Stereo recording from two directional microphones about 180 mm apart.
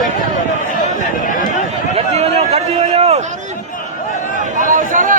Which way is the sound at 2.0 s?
35° right (ahead or behind).